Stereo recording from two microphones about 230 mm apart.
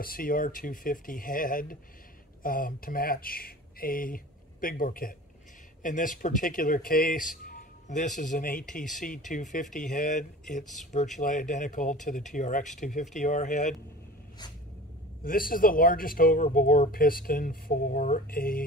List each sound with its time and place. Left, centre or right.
0.0 s speech: left
15.2 s speech: left